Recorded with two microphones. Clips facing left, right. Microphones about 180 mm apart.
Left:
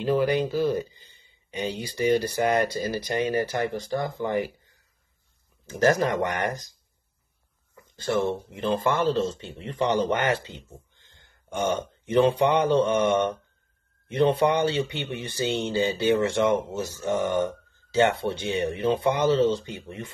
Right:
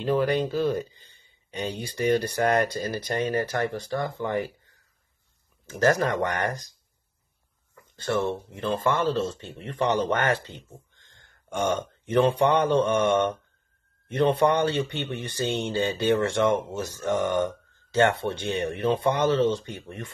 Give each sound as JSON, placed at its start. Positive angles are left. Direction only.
{"t": 0.0, "sound": "speech", "side_deg": 5}
{"t": 5.7, "sound": "speech", "side_deg": 25}
{"t": 6.2, "sound": "speech", "side_deg": 15}
{"t": 7.7, "sound": "a sound", "side_deg": 25}
{"t": 8.2, "sound": "speech", "side_deg": 15}
{"t": 14.1, "sound": "speech", "side_deg": 10}